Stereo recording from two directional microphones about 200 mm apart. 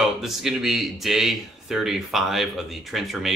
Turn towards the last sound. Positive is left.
turn(degrees=0)  # may be behind; listen again after turning